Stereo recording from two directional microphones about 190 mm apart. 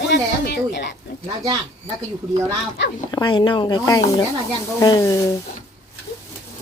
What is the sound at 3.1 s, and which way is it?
Speech, 25° left (ahead or behind).